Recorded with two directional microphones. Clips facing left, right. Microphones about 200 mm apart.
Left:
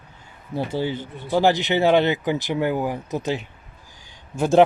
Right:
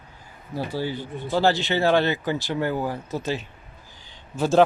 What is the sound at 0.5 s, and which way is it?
Speech, 20° left (ahead or behind).